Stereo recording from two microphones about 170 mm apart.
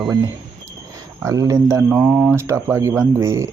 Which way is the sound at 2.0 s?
5° right (ahead or behind).